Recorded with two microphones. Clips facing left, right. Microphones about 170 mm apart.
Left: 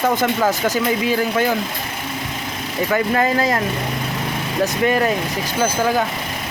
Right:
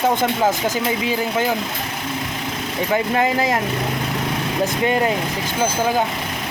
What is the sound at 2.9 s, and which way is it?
Speech, 15° right (ahead or behind).